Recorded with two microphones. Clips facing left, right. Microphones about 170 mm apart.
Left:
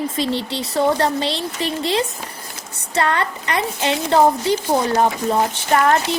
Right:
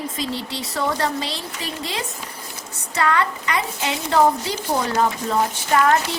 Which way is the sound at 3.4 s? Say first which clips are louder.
Left 3 dB; 55° left (ahead or behind).